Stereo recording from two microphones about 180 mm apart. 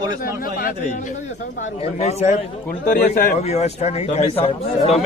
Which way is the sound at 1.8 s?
35° left (ahead or behind).